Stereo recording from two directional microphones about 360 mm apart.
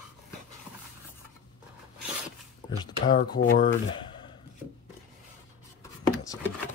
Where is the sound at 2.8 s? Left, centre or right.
Centre.